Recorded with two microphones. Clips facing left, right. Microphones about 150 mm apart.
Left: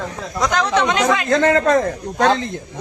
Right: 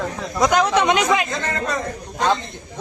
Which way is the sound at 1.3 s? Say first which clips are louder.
Left 10 dB; 85° left.